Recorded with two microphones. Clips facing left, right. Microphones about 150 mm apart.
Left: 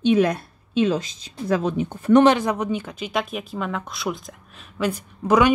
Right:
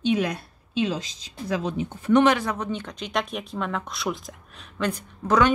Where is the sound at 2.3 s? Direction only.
15° left (ahead or behind).